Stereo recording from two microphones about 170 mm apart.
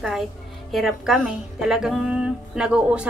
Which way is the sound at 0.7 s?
Centre (ahead or behind).